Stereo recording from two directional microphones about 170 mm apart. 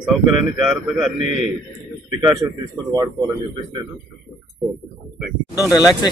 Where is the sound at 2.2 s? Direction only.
20° right (ahead or behind).